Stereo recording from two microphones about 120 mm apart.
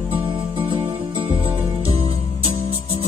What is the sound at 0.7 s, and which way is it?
Music, 45° right (ahead or behind).